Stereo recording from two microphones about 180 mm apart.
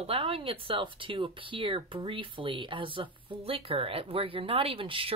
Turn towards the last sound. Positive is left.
turn(degrees=-30)  # may be behind; listen again after turning